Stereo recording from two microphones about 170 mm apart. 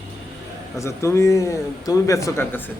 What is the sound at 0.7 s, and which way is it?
Speech, 15° left (ahead or behind).